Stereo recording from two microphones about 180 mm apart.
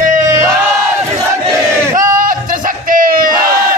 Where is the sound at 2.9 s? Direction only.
50° right (ahead or behind).